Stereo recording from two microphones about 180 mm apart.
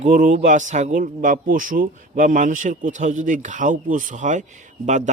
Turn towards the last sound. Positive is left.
turn(degrees=-40)  # may be behind; listen again after turning